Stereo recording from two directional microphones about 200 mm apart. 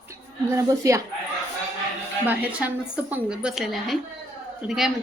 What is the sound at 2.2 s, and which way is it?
A woman's voice, 10° right (ahead or behind).